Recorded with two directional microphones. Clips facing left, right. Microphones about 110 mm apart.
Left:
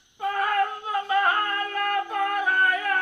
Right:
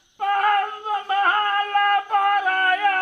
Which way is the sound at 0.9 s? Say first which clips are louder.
Right 2 dB; 50° right (ahead or behind).